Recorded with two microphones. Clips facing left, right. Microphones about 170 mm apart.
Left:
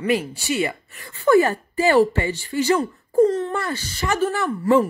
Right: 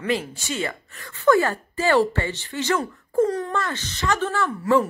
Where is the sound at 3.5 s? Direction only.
10° left (ahead or behind).